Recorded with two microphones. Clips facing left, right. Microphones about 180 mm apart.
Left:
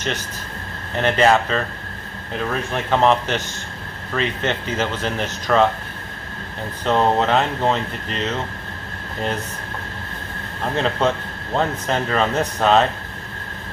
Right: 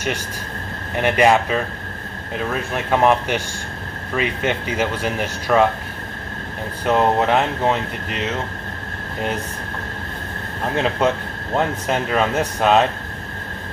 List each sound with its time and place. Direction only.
0.9 s speech: 15° right (ahead or behind)
6.8 s speech: 10° right (ahead or behind)
10.8 s speech: 10° right (ahead or behind)